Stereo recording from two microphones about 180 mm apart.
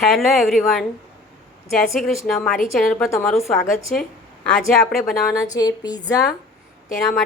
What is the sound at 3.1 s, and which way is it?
A woman's voice, 15° left (ahead or behind).